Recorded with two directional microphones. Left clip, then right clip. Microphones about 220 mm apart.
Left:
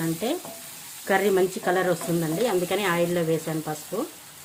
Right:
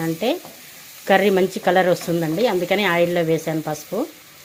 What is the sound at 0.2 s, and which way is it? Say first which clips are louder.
Frying: right 7 dB; 15° right (ahead or behind).